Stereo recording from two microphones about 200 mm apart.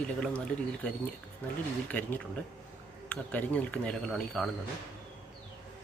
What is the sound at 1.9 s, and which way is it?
Speech, 10° left (ahead or behind).